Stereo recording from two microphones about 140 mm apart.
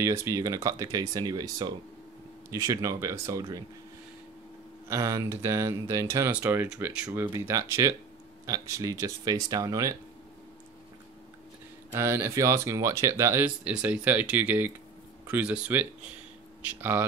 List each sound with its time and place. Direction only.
0.0 s speech: 20° right (ahead or behind)
4.8 s speech: 20° right (ahead or behind)
11.9 s speech: 20° right (ahead or behind)